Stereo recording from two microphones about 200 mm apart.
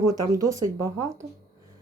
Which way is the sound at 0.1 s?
20° right (ahead or behind).